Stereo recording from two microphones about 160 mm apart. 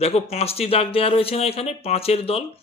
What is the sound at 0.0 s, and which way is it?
Speech, 40° left (ahead or behind).